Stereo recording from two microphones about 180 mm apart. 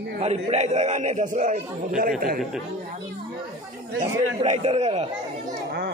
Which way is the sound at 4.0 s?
40° right (ahead or behind).